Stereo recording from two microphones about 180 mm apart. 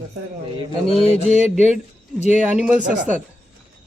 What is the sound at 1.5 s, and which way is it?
Speech, 5° right (ahead or behind).